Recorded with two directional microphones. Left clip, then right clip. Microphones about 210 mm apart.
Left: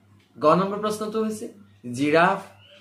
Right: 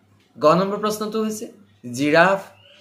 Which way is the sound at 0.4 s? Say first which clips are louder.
Right 3 dB; 35° right (ahead or behind).